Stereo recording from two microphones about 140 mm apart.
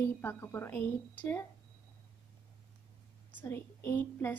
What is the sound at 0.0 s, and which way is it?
A woman's voice, 15° left (ahead or behind).